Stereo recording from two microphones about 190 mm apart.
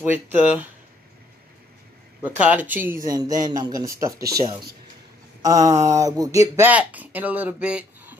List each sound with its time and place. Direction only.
0.0 s speech: 10° right (ahead or behind)
2.2 s speech: 10° right (ahead or behind)